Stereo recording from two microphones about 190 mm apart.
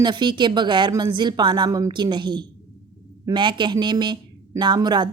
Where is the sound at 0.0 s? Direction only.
25° right (ahead or behind).